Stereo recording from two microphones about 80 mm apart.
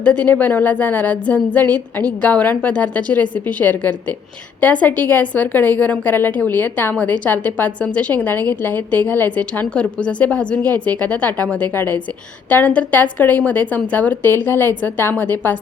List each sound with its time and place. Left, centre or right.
0.0 s a woman's voice: centre